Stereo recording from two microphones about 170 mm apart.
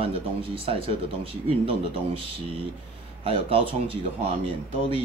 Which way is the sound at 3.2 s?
35° right (ahead or behind).